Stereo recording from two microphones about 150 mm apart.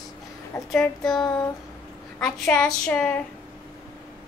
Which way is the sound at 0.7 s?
5° left (ahead or behind).